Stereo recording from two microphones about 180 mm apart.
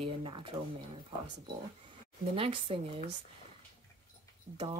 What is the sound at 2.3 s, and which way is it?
Speech, 30° right (ahead or behind).